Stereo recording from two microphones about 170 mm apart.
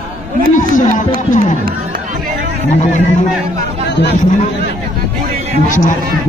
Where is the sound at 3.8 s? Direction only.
85° left.